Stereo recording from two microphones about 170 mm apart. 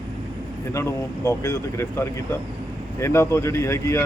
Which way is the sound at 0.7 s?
15° left (ahead or behind).